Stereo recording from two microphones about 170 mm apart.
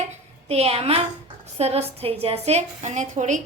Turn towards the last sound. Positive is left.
turn(degrees=-45)  # may be behind; listen again after turning